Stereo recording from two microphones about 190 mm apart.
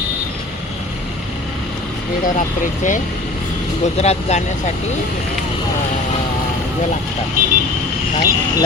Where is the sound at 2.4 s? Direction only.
40° left (ahead or behind).